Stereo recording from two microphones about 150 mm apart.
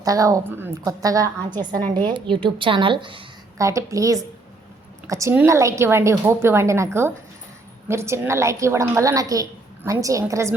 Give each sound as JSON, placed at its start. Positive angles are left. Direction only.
{"t": 0.0, "sound": "a woman's voice", "side_deg": -25}
{"t": 3.6, "sound": "a woman's voice", "side_deg": -20}